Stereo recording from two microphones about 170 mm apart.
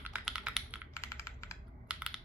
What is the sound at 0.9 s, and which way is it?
Computer keyboard, 15° left (ahead or behind).